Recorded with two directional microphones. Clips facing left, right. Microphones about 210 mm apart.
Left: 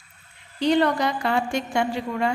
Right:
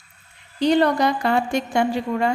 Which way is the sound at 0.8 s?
40° right (ahead or behind).